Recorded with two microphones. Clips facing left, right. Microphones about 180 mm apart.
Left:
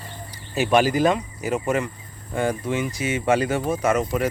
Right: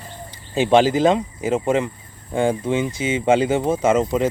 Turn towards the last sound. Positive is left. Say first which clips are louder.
# right 4 dB
turn(degrees=-25)  # may be behind; listen again after turning